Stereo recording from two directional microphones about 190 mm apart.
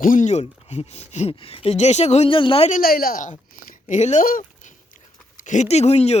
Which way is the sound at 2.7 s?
50° left (ahead or behind).